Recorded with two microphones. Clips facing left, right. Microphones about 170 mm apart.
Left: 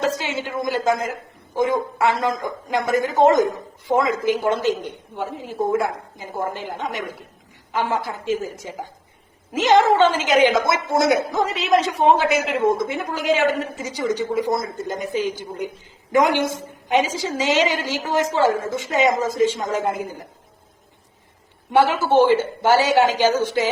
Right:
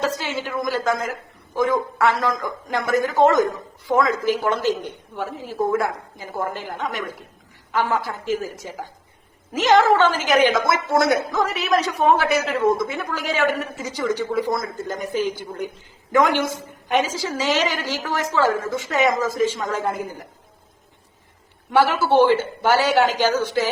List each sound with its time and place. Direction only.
0.0 s a woman's voice: 20° left (ahead or behind)
21.7 s a woman's voice: 15° left (ahead or behind)